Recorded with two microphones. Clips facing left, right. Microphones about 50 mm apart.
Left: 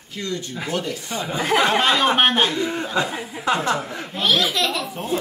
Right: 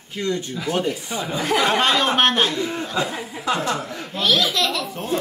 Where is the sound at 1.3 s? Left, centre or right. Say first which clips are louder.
Left 1 dB; left.